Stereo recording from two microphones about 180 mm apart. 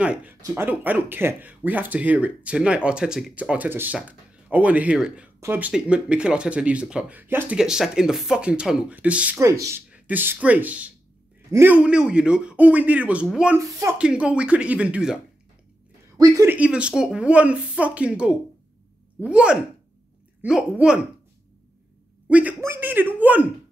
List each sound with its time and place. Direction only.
0.0 s speech: 10° right (ahead or behind)
13.7 s speech: 15° right (ahead or behind)
13.9 s speech: 5° right (ahead or behind)
16.2 s speech: 15° right (ahead or behind)
22.3 s speech: 10° right (ahead or behind)